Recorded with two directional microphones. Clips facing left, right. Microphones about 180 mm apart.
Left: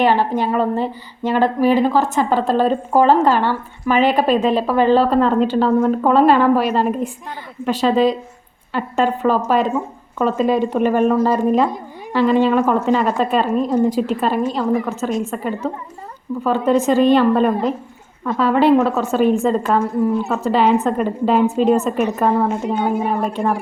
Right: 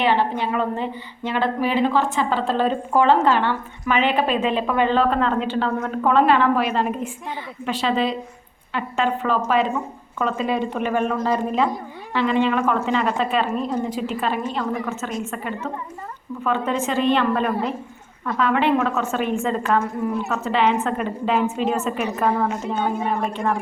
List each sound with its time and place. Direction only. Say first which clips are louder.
0.0 s a woman's voice: left 4 dB; 40° left (ahead or behind)
22.6 s a woman's voice: left 4 dB; 15° left (ahead or behind)
23.2 s a woman's voice: left 4 dB; 40° left (ahead or behind)